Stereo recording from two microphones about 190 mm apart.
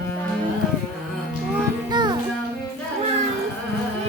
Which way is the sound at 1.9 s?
25° right (ahead or behind).